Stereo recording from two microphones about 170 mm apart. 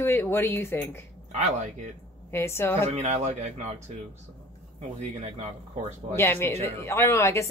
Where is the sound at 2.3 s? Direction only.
15° left (ahead or behind).